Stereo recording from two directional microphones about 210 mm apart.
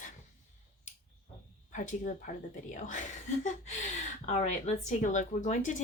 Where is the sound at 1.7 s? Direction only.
35° left (ahead or behind).